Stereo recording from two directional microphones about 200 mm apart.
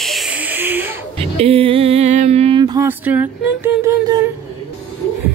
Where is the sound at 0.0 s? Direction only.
Centre (ahead or behind).